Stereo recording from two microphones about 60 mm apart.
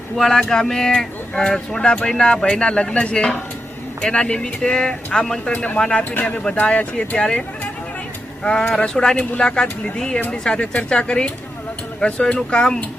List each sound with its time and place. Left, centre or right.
0.2 s speech: centre
5.5 s speech: left
8.4 s speech: centre
10.2 s speech: left
10.4 s speech: centre